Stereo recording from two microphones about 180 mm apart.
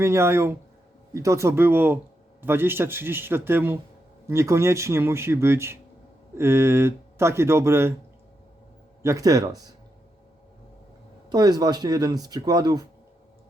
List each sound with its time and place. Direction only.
0.0 s speech: 15° right (ahead or behind)
9.0 s speech: 20° right (ahead or behind)
11.3 s speech: 20° right (ahead or behind)